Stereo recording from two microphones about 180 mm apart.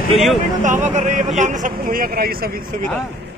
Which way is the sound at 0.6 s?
45° right (ahead or behind).